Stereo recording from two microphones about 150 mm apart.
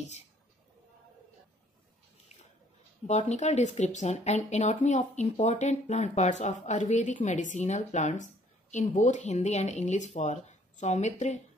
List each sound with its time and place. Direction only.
3.1 s speech: 50° left (ahead or behind)